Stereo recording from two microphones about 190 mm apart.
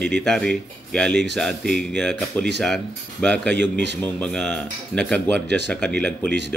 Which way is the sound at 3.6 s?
65° right (ahead or behind).